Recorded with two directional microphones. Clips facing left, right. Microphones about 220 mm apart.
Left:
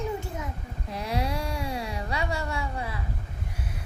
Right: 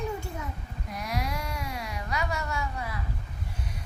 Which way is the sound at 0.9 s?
30° left (ahead or behind).